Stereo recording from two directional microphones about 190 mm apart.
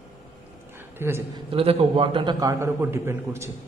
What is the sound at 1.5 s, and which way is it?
A man's voice, 30° right (ahead or behind).